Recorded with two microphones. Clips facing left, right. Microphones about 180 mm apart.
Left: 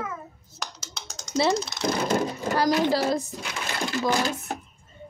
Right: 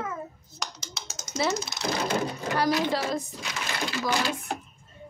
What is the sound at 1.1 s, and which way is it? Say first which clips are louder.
Mechanisms: even; 5° right (ahead or behind).